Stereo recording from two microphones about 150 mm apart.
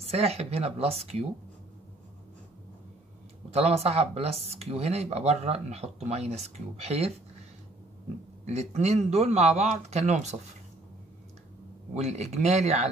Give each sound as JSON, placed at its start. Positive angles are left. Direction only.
{"t": 0.1, "sound": "speech", "side_deg": -45}
{"t": 3.5, "sound": "speech", "side_deg": -45}
{"t": 8.5, "sound": "speech", "side_deg": -50}
{"t": 11.9, "sound": "speech", "side_deg": -50}